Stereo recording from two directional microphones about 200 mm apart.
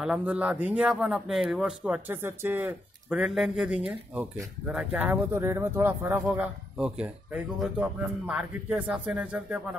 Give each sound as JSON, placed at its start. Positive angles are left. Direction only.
{"t": 0.0, "sound": "speech", "side_deg": -5}